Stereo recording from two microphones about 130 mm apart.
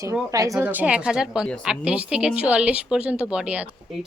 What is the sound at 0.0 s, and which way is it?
Speech, 25° right (ahead or behind).